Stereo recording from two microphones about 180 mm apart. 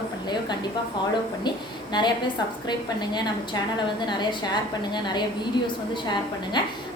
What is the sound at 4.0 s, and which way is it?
A woman's voice, 25° left (ahead or behind).